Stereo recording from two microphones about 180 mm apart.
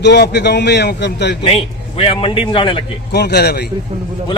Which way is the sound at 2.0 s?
30° left (ahead or behind).